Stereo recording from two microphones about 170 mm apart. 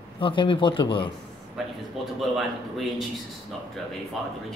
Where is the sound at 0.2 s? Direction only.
30° left (ahead or behind).